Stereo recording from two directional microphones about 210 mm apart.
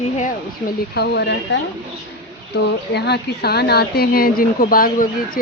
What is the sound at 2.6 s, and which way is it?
A woman's voice, 50° left (ahead or behind).